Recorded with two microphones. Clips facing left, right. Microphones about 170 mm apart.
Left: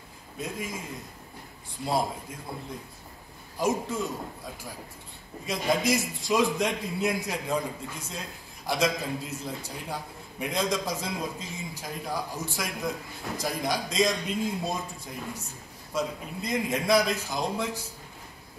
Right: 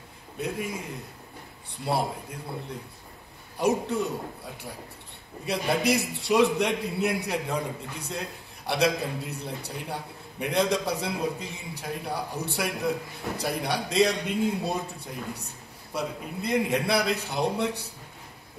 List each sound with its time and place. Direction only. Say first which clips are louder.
0.4 s a man's voice: right 3 dB; 65° right (ahead or behind)
3.5 s a man's voice: right 3 dB; 65° right (ahead or behind)
5.4 s a man's voice: right 1 dB; 65° right (ahead or behind)